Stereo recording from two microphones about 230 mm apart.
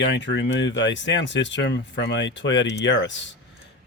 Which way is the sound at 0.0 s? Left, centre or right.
Left.